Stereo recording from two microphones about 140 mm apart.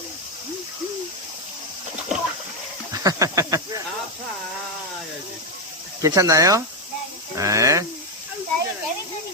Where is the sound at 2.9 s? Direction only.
25° right (ahead or behind).